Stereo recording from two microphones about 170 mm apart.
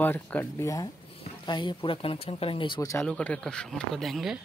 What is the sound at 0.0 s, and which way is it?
Speech, 10° left (ahead or behind).